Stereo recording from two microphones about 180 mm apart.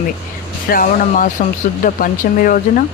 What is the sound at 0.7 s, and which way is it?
Speech, 50° left (ahead or behind).